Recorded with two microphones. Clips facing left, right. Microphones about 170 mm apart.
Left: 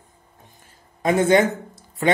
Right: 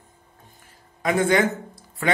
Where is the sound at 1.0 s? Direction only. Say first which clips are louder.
Left 3 dB; 20° left (ahead or behind).